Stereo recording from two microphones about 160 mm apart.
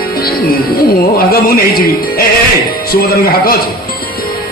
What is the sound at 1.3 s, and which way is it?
Speech, 70° left (ahead or behind).